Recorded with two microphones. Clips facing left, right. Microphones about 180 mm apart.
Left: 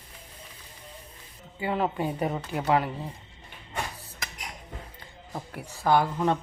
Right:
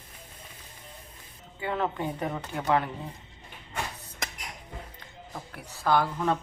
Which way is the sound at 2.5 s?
10° left (ahead or behind).